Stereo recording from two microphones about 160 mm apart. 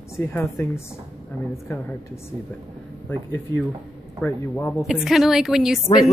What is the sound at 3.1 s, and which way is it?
A woman's voice, 10° left (ahead or behind).